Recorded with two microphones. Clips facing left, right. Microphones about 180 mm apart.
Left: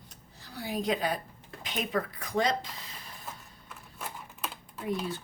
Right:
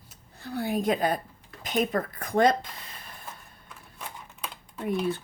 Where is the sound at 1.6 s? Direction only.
45° right (ahead or behind).